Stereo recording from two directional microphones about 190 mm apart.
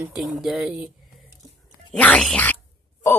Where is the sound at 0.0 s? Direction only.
Centre (ahead or behind).